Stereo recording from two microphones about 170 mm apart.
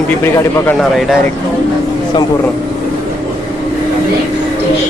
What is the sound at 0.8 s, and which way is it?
Speech, centre (ahead or behind).